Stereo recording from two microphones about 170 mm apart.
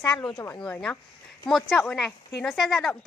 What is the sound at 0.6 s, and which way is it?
Speech, 5° left (ahead or behind).